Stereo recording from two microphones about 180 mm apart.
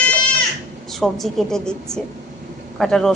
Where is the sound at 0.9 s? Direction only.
Centre (ahead or behind).